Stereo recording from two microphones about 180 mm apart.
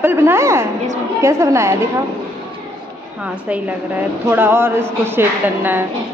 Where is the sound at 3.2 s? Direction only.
5° right (ahead or behind).